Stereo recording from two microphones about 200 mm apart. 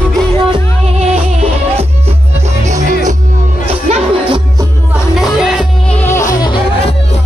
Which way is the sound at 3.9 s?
30° right (ahead or behind).